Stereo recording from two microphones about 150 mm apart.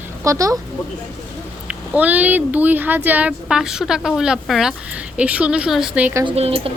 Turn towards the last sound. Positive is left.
turn(degrees=-40)  # may be behind; listen again after turning